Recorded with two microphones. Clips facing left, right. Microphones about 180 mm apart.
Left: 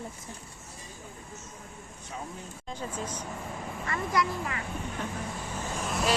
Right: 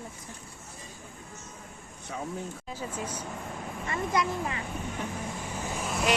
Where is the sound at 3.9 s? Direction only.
20° right (ahead or behind).